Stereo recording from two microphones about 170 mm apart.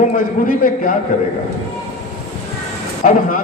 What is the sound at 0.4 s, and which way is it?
Speech, 55° left (ahead or behind).